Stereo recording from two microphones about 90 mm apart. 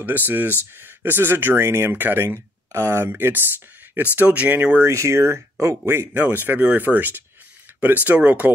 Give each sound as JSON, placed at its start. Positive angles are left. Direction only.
{"t": 0.0, "sound": "speech", "side_deg": -20}
{"t": 4.8, "sound": "speech", "side_deg": -30}